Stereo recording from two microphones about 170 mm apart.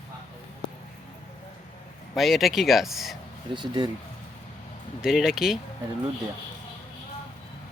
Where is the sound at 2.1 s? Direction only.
Centre (ahead or behind).